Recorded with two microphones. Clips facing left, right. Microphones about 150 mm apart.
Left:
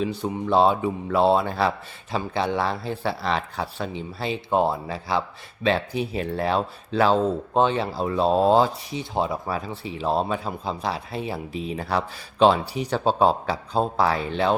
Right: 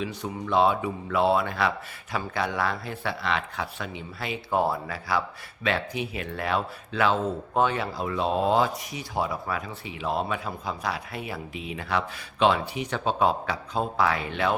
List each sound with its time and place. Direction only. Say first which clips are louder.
0.0 s speech: left 6 dB; 30° left (ahead or behind)